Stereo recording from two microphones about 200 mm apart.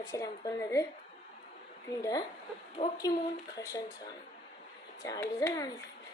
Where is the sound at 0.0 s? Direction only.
15° left (ahead or behind).